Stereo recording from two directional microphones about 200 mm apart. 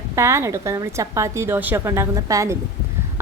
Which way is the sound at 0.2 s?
15° right (ahead or behind).